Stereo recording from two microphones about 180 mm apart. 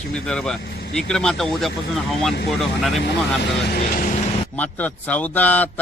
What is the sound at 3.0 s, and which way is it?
Speech, 70° left (ahead or behind).